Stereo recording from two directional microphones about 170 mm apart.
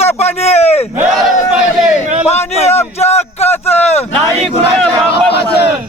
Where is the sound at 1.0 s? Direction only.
Centre (ahead or behind).